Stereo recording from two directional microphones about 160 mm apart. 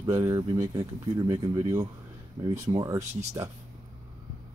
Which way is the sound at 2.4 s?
40° right (ahead or behind).